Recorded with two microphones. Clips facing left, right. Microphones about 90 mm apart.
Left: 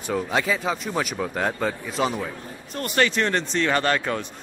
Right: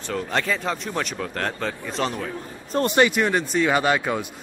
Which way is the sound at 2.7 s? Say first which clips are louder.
Right 9 dB; 30° right (ahead or behind).